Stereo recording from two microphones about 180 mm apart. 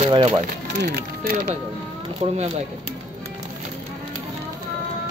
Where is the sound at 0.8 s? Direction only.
60° right (ahead or behind).